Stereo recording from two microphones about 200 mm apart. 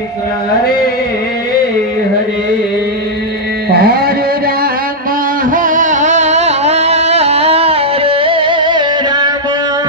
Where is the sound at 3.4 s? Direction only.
50° right (ahead or behind).